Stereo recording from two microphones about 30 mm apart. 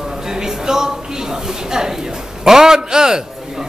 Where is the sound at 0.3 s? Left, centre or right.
Centre.